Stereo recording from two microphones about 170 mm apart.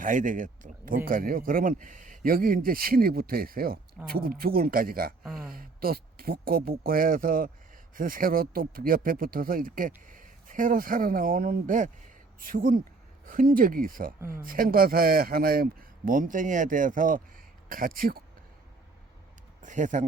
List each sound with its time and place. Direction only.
0.0 s speech: 50° right (ahead or behind)
14.2 s speech: 15° right (ahead or behind)
14.4 s speech: 55° right (ahead or behind)
19.6 s speech: 45° right (ahead or behind)